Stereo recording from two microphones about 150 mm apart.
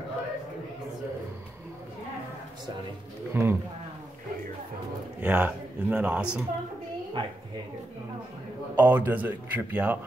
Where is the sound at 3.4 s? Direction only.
15° right (ahead or behind).